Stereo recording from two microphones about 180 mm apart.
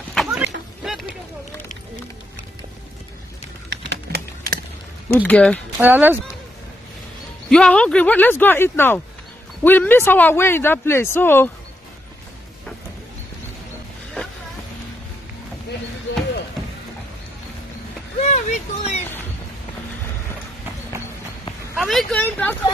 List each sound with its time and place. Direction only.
0.1 s vehicle: centre (ahead or behind)
0.8 s a sound: centre (ahead or behind)
3.7 s typing: 65° right (ahead or behind)
5.1 s speech: 10° left (ahead or behind)
5.8 s speech: 10° right (ahead or behind)
7.4 s speech: 5° left (ahead or behind)
18.3 s a sound: 40° left (ahead or behind)
21.8 s vehicle: 5° left (ahead or behind)